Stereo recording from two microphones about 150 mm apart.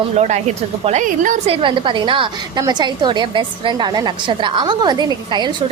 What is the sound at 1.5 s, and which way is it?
A woman's voice, 35° right (ahead or behind).